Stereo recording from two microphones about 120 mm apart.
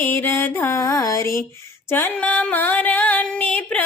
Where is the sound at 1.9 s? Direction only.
15° left (ahead or behind).